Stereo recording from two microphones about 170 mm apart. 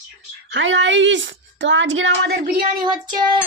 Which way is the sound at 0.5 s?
90° right.